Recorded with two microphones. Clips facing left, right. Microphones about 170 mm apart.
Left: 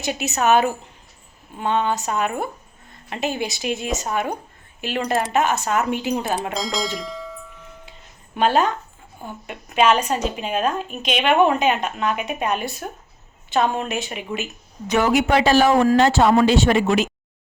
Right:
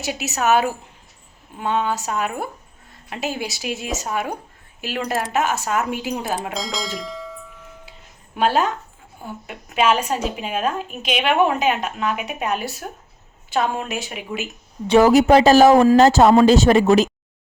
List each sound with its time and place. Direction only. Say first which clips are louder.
0.0 s a woman's voice: left 1 dB; 5° right (ahead or behind)
14.8 s speech: right 6 dB; 35° right (ahead or behind)